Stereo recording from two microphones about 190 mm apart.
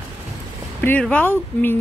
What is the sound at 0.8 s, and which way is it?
Speech, 5° left (ahead or behind).